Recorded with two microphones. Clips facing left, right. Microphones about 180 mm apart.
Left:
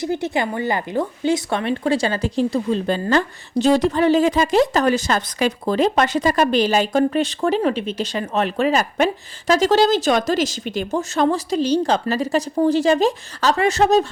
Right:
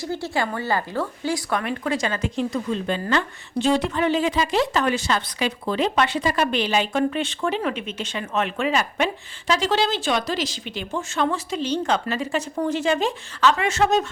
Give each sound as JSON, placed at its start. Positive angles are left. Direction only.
{"t": 0.0, "sound": "speech", "side_deg": 20}